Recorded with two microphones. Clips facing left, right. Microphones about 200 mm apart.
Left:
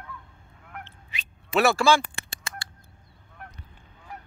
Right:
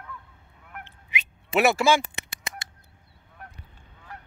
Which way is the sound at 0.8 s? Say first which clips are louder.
Right 6 dB; 20° right (ahead or behind).